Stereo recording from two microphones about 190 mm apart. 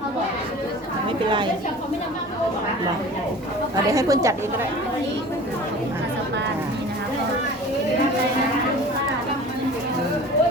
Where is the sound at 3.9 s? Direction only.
15° right (ahead or behind).